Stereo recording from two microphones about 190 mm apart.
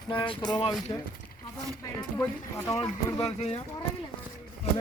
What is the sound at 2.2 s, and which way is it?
Speech, 15° left (ahead or behind).